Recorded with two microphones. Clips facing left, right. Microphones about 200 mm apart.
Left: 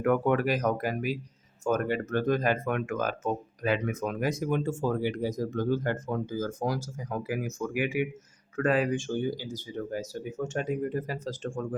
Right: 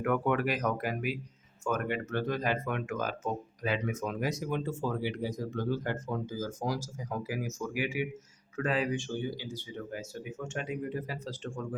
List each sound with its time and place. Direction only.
0.0 s speech: 40° left (ahead or behind)